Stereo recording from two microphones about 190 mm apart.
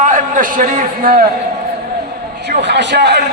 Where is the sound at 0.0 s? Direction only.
45° right (ahead or behind).